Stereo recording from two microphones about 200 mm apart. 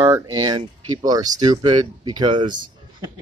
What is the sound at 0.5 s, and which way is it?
Speech, 20° right (ahead or behind).